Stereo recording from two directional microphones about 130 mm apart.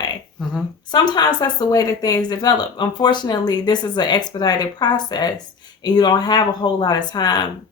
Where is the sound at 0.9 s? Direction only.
35° left (ahead or behind).